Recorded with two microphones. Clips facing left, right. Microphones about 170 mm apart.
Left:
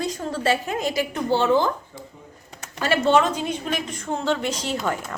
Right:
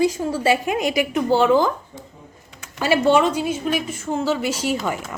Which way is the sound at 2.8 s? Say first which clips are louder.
Right 2 dB; 10° right (ahead or behind).